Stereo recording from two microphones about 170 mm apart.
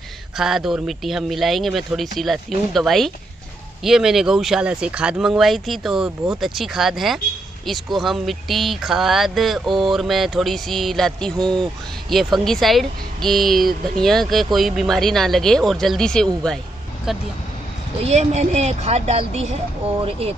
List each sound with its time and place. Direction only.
0.4 s speech: centre (ahead or behind)
18.0 s a woman's voice: 40° right (ahead or behind)